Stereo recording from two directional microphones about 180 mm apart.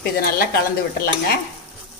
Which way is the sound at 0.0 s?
55° left (ahead or behind).